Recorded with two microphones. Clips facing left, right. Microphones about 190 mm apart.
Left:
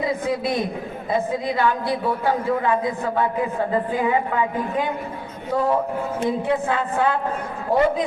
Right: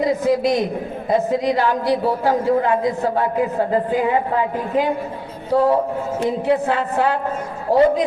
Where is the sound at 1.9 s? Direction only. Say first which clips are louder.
Right 4 dB; 40° right (ahead or behind).